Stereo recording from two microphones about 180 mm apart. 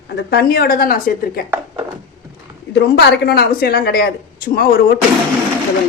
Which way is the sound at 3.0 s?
60° left (ahead or behind).